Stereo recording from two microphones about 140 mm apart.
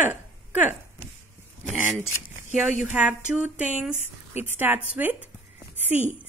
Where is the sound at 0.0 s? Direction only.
15° right (ahead or behind).